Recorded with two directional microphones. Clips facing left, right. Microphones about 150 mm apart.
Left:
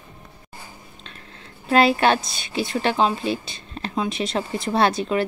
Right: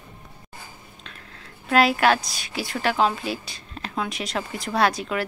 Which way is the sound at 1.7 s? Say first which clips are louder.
Left 2 dB; 25° left (ahead or behind).